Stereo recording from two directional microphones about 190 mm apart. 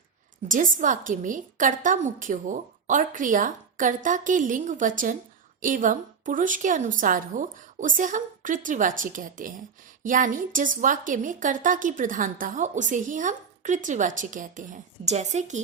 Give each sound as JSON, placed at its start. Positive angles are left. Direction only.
{"t": 0.4, "sound": "a woman's voice", "side_deg": -45}